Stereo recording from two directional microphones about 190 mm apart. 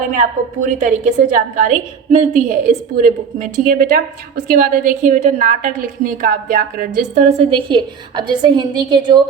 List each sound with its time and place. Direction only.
0.1 s a woman's voice: 40° right (ahead or behind); by 9.2 s 25° right (ahead or behind)